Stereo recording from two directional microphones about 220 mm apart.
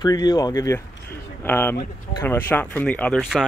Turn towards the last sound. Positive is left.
turn(degrees=5)  # may be behind; listen again after turning